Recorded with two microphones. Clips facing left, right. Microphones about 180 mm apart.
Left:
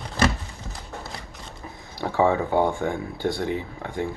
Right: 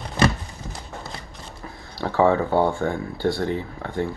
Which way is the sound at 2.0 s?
15° left (ahead or behind).